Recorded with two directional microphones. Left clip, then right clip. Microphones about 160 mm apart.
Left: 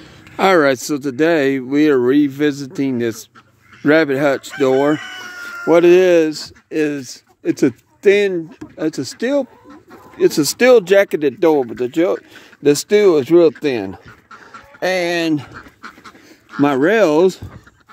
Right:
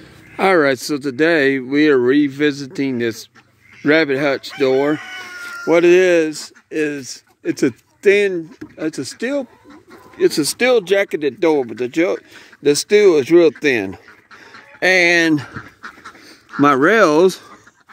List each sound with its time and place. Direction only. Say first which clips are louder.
0.4 s speech: left 1 dB; centre (ahead or behind)
14.8 s speech: right 5 dB; 20° right (ahead or behind)
15.5 s duck: right 2 dB; 80° left
16.6 s speech: right 1 dB; 10° right (ahead or behind)